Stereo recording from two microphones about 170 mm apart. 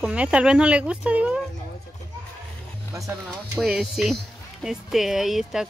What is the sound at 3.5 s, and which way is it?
Speech, 5° right (ahead or behind).